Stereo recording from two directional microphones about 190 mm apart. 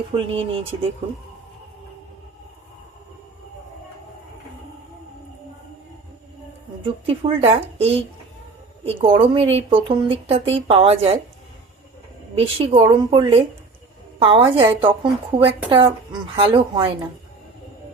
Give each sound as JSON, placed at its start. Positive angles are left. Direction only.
{"t": 0.1, "sound": "speech", "side_deg": -30}
{"t": 6.8, "sound": "speech", "side_deg": -30}
{"t": 12.4, "sound": "speech", "side_deg": -30}